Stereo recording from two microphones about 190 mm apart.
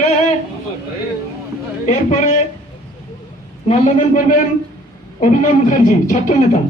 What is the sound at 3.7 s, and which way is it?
A man's voice, 45° left (ahead or behind).